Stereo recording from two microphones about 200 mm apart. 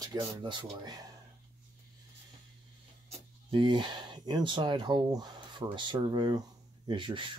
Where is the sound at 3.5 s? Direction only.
25° right (ahead or behind).